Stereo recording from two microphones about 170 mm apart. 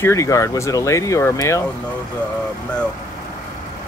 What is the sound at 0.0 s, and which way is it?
Speech, 20° left (ahead or behind).